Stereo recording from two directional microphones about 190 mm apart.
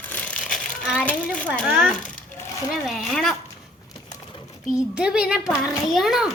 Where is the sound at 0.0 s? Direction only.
10° left (ahead or behind).